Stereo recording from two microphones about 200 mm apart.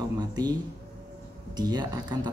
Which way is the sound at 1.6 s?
20° right (ahead or behind).